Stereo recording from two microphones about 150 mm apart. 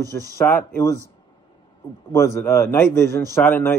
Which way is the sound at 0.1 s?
10° left (ahead or behind).